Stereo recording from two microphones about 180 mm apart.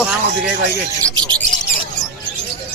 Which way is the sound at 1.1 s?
25° right (ahead or behind).